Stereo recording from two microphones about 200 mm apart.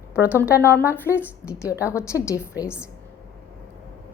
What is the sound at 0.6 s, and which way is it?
Speech, 10° left (ahead or behind).